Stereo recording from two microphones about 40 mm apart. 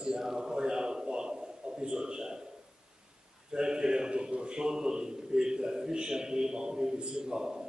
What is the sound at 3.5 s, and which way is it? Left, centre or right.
A man's voice, right.